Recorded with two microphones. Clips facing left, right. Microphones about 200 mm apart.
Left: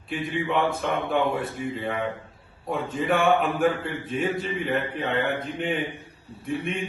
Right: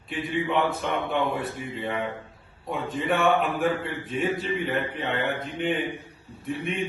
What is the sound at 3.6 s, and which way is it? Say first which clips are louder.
A man's voice: left 2 dB; centre (ahead or behind).